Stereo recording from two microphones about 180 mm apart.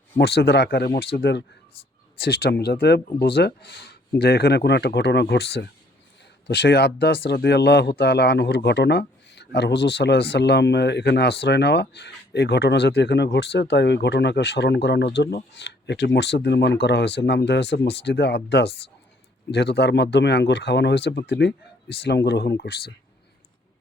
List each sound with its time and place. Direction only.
0.2 s speech: 65° left (ahead or behind)